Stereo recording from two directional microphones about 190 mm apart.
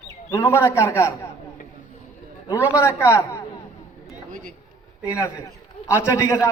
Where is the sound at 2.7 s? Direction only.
15° left (ahead or behind).